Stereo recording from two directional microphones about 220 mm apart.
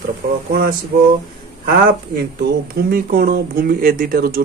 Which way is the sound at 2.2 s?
45° right (ahead or behind).